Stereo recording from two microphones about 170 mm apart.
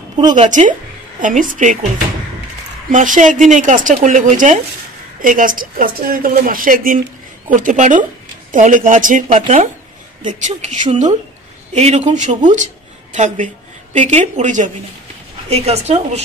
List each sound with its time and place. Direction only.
0.4 s a woman's voice: 45° right (ahead or behind)
2.9 s a woman's voice: 50° right (ahead or behind)